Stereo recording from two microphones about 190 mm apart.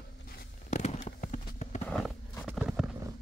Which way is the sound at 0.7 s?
35° left (ahead or behind).